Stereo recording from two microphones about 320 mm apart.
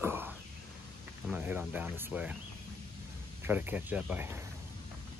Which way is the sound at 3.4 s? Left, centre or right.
Centre.